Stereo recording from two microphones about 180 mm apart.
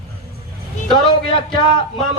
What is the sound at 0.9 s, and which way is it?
Speech, 25° left (ahead or behind).